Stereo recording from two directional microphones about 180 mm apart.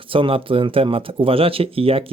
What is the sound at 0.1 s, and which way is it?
Speech, 30° right (ahead or behind).